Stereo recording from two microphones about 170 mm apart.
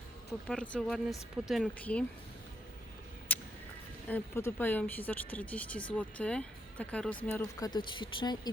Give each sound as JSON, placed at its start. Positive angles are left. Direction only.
{"t": 0.4, "sound": "speech", "side_deg": 5}
{"t": 3.3, "sound": "a sound", "side_deg": 10}
{"t": 4.1, "sound": "speech", "side_deg": 15}
{"t": 7.7, "sound": "speech", "side_deg": 30}